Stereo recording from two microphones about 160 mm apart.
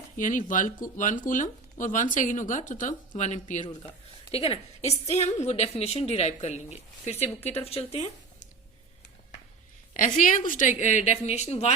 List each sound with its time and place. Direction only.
0.2 s speech: 55° left (ahead or behind)
3.7 s a woman's voice: 35° left (ahead or behind)
7.3 s speech: 10° left (ahead or behind)
7.6 s speech: 40° left (ahead or behind)
9.9 s speech: 55° left (ahead or behind)